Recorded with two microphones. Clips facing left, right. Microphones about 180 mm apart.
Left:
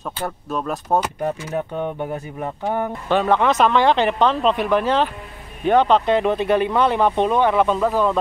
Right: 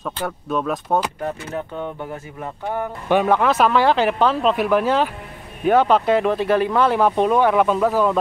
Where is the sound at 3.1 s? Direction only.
10° right (ahead or behind).